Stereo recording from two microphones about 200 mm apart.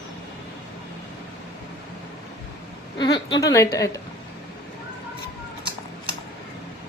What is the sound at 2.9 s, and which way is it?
Speech, 20° left (ahead or behind).